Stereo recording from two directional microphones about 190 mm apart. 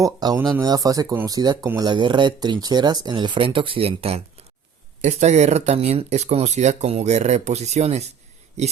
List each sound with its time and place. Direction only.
0.0 s speech: 20° right (ahead or behind)